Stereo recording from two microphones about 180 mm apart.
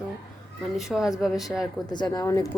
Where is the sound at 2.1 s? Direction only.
20° left (ahead or behind).